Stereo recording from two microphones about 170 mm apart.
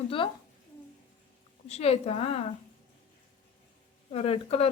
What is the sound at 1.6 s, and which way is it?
Speech, 40° left (ahead or behind).